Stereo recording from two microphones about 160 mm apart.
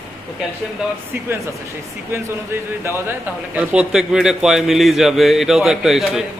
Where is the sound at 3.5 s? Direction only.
10° right (ahead or behind).